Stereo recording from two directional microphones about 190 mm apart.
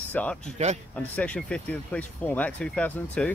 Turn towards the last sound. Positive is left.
turn(degrees=5)  # may be behind; listen again after turning